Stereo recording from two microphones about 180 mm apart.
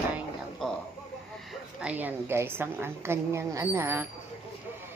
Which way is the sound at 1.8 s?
10° right (ahead or behind).